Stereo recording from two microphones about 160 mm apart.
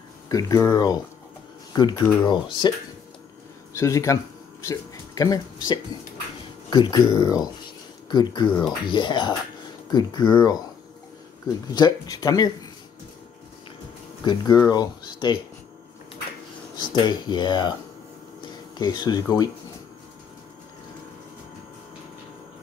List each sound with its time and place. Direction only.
0.3 s speech: 20° left (ahead or behind)
3.7 s speech: 20° left (ahead or behind)
11.7 s speech: 25° left (ahead or behind)
14.2 s speech: 25° left (ahead or behind)
16.7 s speech: 30° left (ahead or behind)